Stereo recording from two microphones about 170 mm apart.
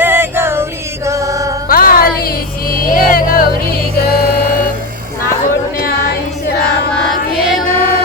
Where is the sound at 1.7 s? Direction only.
60° left (ahead or behind).